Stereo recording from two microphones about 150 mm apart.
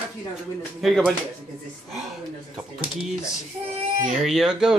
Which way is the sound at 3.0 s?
5° right (ahead or behind).